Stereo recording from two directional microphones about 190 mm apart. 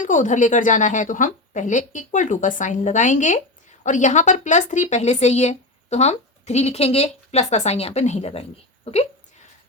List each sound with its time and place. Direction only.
0.0 s a woman's voice: 40° left (ahead or behind)